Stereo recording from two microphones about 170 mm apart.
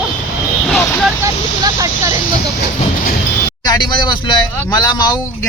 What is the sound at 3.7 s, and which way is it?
Speech, 25° left (ahead or behind).